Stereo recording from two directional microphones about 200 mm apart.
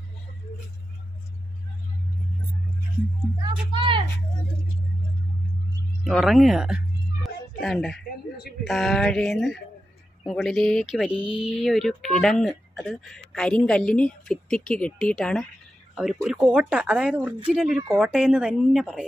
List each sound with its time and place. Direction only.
3.4 s speech: 25° right (ahead or behind)
6.0 s speech: centre (ahead or behind)
7.2 s music: centre (ahead or behind)
8.6 s speech: centre (ahead or behind)